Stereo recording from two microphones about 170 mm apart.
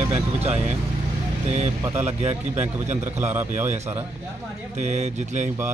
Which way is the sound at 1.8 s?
20° right (ahead or behind).